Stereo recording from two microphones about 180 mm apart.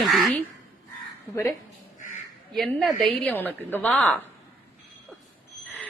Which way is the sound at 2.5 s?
Centre (ahead or behind).